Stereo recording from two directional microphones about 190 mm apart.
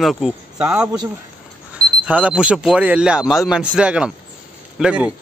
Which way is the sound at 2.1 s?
5° right (ahead or behind).